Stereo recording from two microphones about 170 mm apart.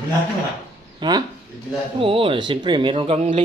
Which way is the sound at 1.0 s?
25° right (ahead or behind).